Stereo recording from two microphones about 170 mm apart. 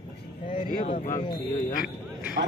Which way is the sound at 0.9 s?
50° left (ahead or behind).